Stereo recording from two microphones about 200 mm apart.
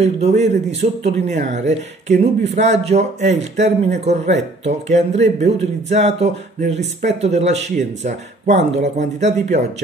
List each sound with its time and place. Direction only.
0.0 s speech: 35° right (ahead or behind)